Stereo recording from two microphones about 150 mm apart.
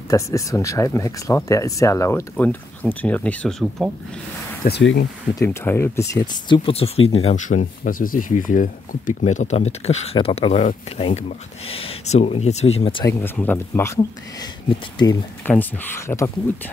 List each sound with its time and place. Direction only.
0.1 s speech: 20° left (ahead or behind); by 3.9 s 5° left (ahead or behind)
4.6 s speech: 90° left
5.3 s speech: 20° left (ahead or behind)
6.5 s speech: 40° left (ahead or behind)
7.3 s speech: 55° left (ahead or behind); by 13.0 s 40° left (ahead or behind)
13.0 s speech: 15° left (ahead or behind)
15.4 s speech: 10° left (ahead or behind)